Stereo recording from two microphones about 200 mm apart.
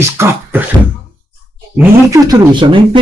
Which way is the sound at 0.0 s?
10° right (ahead or behind).